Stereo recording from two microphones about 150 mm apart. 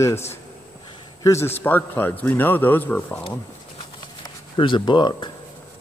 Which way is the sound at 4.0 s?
30° left (ahead or behind).